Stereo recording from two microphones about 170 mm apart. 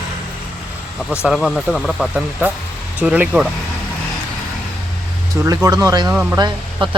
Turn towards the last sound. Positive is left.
turn(degrees=-25)  # may be behind; listen again after turning